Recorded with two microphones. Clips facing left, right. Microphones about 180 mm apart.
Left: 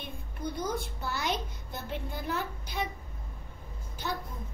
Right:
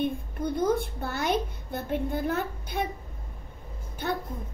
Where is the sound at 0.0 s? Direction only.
55° right (ahead or behind).